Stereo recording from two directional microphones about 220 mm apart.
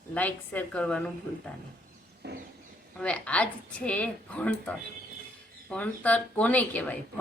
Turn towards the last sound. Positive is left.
turn(degrees=5)  # may be behind; listen again after turning